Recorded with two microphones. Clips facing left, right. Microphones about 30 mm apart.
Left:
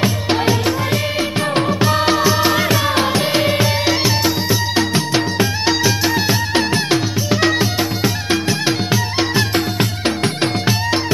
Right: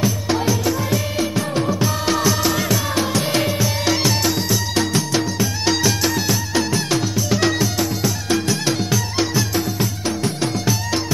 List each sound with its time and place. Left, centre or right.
0.0 s music: left
2.0 s music: left